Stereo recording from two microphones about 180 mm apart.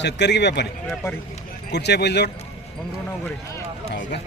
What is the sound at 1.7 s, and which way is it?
Speech, 70° left (ahead or behind).